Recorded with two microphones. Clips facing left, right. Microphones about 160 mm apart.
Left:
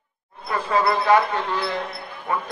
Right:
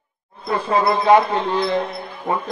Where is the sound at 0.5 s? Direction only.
20° right (ahead or behind).